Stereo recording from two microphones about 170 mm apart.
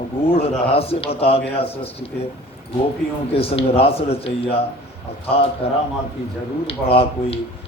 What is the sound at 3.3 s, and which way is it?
A man's voice, 35° left (ahead or behind).